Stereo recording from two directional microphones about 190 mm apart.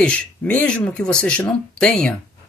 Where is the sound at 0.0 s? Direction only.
5° left (ahead or behind).